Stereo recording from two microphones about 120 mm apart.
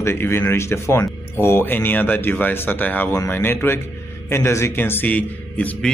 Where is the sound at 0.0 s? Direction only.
20° left (ahead or behind).